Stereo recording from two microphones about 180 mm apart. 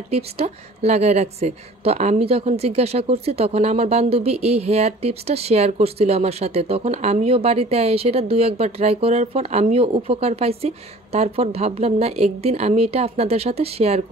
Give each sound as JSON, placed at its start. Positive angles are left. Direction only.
{"t": 0.1, "sound": "a woman's voice", "side_deg": -35}